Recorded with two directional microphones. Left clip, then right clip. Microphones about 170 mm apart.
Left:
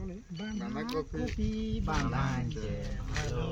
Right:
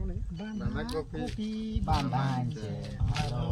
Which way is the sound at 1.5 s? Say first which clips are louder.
Left 1 dB; 55° right (ahead or behind).